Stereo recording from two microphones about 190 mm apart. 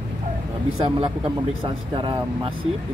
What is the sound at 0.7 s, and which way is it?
Speech, 30° right (ahead or behind).